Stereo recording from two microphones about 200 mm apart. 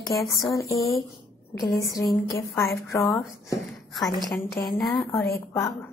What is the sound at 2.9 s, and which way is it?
Speech, 15° left (ahead or behind).